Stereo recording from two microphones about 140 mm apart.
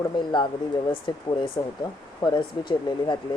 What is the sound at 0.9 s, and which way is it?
Speech, 35° left (ahead or behind).